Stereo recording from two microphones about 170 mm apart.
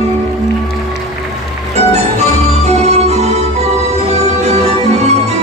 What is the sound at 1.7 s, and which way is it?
Music, 40° right (ahead or behind).